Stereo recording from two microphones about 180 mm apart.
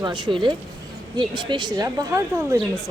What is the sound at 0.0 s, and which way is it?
A woman's voice, 25° right (ahead or behind).